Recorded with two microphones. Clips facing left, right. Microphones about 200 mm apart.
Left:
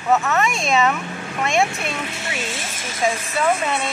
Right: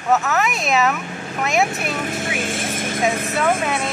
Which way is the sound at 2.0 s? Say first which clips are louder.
Right 4 dB; 50° right (ahead or behind).